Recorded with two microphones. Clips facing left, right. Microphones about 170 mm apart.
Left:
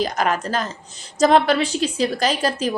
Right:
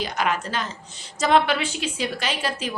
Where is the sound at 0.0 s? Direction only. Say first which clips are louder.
Left 4 dB; 40° left (ahead or behind).